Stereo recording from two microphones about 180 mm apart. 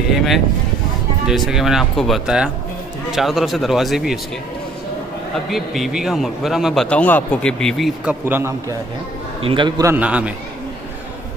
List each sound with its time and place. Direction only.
0.1 s a man's voice: centre (ahead or behind)
5.5 s a man's voice: centre (ahead or behind)
9.4 s a man's voice: 30° right (ahead or behind)
9.9 s a man's voice: 5° right (ahead or behind)